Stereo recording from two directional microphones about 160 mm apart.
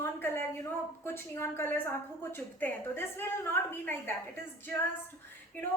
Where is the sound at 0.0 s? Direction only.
15° left (ahead or behind).